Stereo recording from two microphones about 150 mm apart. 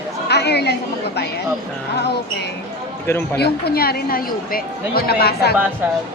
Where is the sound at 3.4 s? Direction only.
90° left.